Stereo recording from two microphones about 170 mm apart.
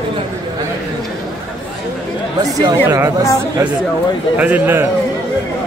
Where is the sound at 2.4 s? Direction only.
20° right (ahead or behind).